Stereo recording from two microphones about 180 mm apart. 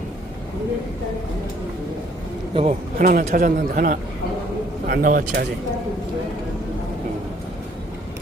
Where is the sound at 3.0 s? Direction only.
50° right (ahead or behind).